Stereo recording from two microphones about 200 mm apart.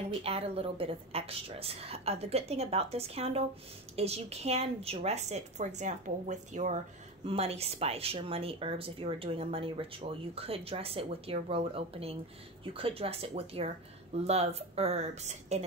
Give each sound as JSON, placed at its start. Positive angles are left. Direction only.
{"t": 0.2, "sound": "a woman's voice", "side_deg": -30}